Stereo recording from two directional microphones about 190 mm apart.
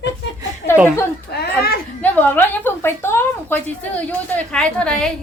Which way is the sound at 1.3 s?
55° left (ahead or behind).